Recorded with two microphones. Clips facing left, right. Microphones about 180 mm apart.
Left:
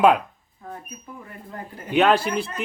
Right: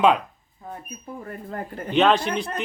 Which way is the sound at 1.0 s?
40° right (ahead or behind).